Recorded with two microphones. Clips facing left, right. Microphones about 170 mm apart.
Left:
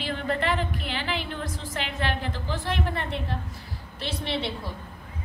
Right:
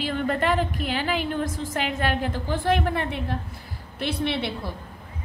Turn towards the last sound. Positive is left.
turn(degrees=-60)  # may be behind; listen again after turning